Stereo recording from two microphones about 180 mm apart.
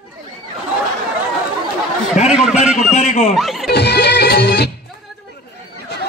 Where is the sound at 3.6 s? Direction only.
65° left (ahead or behind).